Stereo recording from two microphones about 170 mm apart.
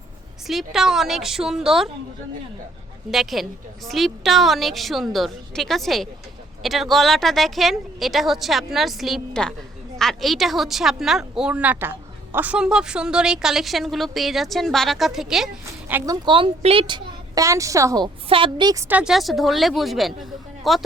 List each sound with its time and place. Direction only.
0.4 s speech: centre (ahead or behind)
3.1 s speech: centre (ahead or behind)
15.9 s a woman's voice: 15° right (ahead or behind)
16.2 s a woman's voice: 30° right (ahead or behind); by 20.8 s centre (ahead or behind)